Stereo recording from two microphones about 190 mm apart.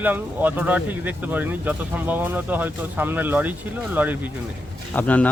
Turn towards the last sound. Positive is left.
turn(degrees=10)  # may be behind; listen again after turning